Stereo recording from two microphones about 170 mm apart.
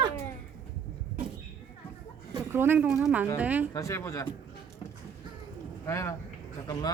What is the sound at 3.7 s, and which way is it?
Speech, 20° left (ahead or behind).